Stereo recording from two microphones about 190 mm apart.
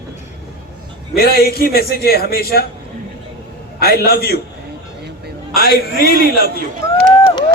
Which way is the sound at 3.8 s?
55° left (ahead or behind).